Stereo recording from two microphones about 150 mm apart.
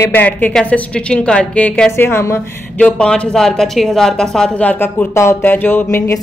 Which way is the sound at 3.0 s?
5° left (ahead or behind).